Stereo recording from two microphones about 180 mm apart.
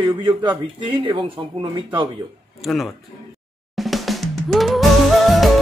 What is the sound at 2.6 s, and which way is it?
Speech, centre (ahead or behind).